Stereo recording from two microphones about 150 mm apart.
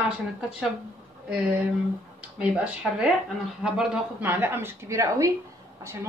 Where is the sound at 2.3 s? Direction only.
10° right (ahead or behind).